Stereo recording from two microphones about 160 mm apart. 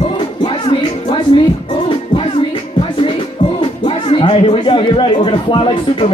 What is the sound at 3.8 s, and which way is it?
A man's voice, 35° left (ahead or behind).